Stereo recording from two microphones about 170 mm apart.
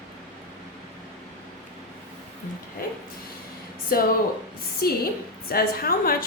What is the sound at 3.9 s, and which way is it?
A woman's voice, 60° left (ahead or behind).